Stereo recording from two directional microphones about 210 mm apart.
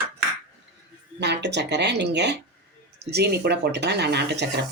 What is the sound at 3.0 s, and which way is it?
Speech, 50° right (ahead or behind).